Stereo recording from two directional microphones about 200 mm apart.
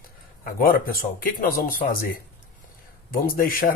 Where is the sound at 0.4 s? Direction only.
45° left (ahead or behind).